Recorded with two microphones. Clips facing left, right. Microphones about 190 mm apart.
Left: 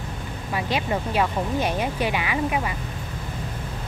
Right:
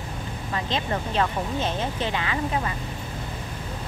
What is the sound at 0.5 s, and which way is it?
Speech, 10° left (ahead or behind).